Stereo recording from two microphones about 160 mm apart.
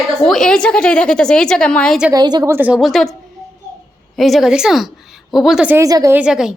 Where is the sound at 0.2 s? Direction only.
5° left (ahead or behind).